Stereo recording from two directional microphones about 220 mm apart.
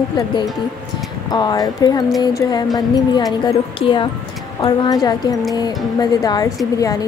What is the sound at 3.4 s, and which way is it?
Speech, 20° left (ahead or behind).